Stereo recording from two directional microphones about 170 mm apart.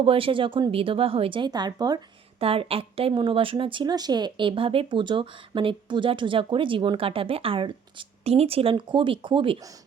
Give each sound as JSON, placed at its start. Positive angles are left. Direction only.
{"t": 0.0, "sound": "a woman's voice", "side_deg": -30}